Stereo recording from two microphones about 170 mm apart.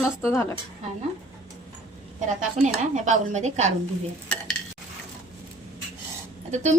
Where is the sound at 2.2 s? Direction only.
45° right (ahead or behind).